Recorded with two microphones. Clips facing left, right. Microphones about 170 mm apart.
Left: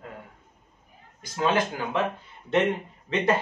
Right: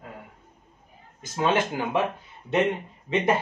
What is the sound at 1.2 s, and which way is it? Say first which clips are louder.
Speech: right 1 dB; 25° right (ahead or behind).